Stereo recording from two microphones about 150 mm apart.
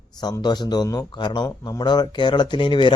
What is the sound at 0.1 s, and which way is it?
Speech, 25° left (ahead or behind).